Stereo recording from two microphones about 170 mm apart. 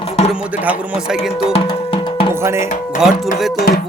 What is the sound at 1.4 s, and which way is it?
Music, 35° left (ahead or behind).